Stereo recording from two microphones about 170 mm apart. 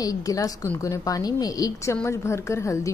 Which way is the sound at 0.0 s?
20° left (ahead or behind).